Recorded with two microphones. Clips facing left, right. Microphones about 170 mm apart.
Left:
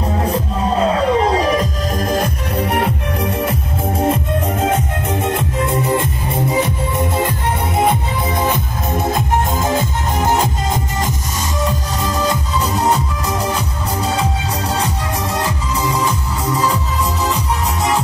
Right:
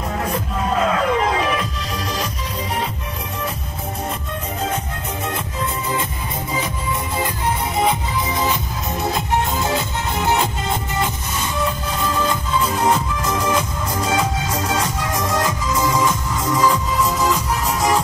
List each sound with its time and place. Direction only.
0.2 s music: 30° left (ahead or behind); by 2.9 s 60° left (ahead or behind)
7.8 s music: 55° left (ahead or behind)
12.1 s music: 35° left (ahead or behind)
16.0 s music: 30° left (ahead or behind)